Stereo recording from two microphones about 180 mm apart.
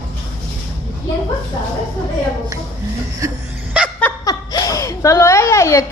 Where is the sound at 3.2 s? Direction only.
15° right (ahead or behind).